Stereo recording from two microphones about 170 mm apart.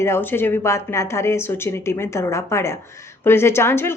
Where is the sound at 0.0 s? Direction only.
15° left (ahead or behind).